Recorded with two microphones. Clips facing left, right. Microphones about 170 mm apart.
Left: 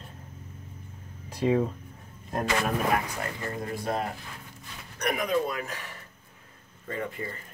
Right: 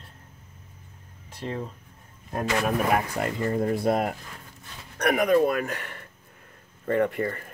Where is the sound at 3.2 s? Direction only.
70° right (ahead or behind).